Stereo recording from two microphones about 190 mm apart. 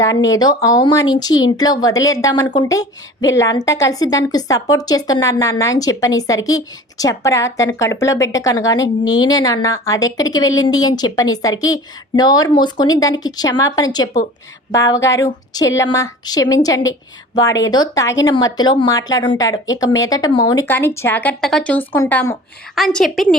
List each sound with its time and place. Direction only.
0.0 s a woman's voice: 20° left (ahead or behind)
20.7 s a woman's voice: 10° left (ahead or behind)
22.7 s a woman's voice: centre (ahead or behind)